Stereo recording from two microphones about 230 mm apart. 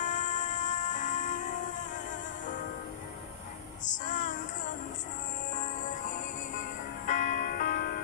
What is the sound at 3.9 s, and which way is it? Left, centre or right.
Child singing, left.